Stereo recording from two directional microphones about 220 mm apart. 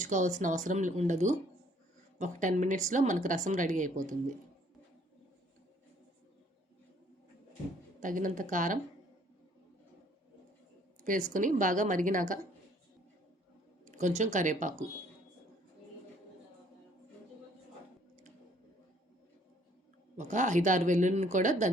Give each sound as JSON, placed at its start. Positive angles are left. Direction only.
{"t": 0.0, "sound": "speech", "side_deg": -35}
{"t": 8.0, "sound": "speech", "side_deg": -35}
{"t": 11.0, "sound": "speech", "side_deg": -35}
{"t": 13.8, "sound": "speech", "side_deg": -35}
{"t": 20.1, "sound": "speech", "side_deg": -35}